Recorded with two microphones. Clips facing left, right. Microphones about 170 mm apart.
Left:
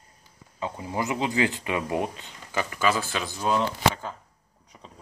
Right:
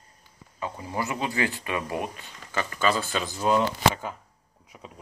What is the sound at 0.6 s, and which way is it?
Speech, 20° left (ahead or behind).